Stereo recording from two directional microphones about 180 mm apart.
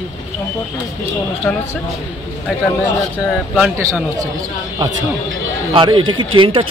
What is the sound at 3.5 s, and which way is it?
Speech, 5° right (ahead or behind).